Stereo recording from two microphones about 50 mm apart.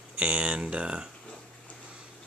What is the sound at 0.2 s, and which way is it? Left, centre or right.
Speech, right.